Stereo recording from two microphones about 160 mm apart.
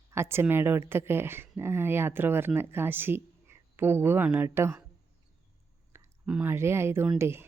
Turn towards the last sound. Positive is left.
turn(degrees=-15)  # may be behind; listen again after turning